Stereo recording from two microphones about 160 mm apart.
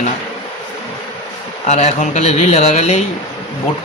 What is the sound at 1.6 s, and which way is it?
Speech, 45° left (ahead or behind).